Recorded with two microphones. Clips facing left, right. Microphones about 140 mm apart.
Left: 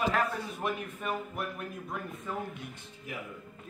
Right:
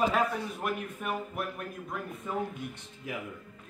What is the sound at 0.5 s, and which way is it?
A woman's voice, centre (ahead or behind).